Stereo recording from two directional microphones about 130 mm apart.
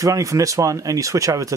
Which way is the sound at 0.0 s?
25° right (ahead or behind).